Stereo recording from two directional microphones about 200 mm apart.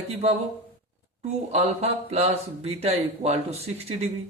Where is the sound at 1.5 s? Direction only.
30° right (ahead or behind).